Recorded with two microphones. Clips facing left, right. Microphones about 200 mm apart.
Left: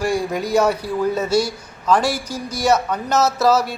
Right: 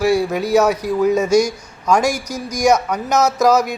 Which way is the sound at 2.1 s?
45° right (ahead or behind).